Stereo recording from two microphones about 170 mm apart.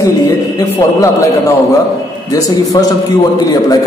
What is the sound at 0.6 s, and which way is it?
Speech, 20° left (ahead or behind).